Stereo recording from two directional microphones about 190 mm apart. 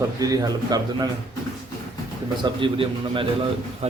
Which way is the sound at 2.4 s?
25° right (ahead or behind).